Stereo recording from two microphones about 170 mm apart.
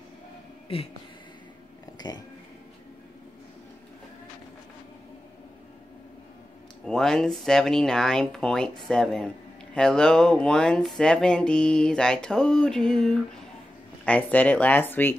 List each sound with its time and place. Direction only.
2.0 s a sound: 25° left (ahead or behind)
6.8 s music: 5° left (ahead or behind)
14.0 s speech: 10° left (ahead or behind)